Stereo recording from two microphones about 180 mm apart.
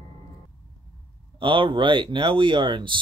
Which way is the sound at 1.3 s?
30° right (ahead or behind).